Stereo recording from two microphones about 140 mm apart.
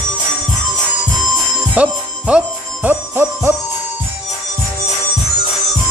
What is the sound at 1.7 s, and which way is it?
Music, 10° right (ahead or behind).